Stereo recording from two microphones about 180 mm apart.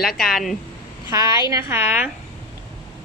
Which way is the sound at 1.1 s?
20° right (ahead or behind).